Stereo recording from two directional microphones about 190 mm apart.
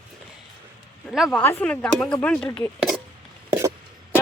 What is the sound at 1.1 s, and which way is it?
Speech, centre (ahead or behind).